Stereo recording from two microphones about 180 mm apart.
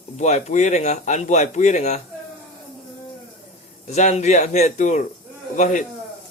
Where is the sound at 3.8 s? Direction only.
40° left (ahead or behind).